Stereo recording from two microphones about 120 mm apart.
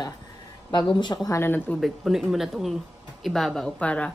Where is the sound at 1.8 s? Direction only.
Centre (ahead or behind).